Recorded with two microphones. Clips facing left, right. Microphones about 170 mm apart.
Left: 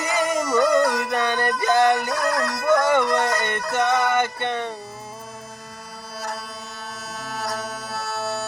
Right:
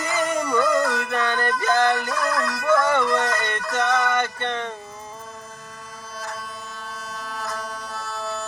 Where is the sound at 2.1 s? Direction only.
40° left (ahead or behind).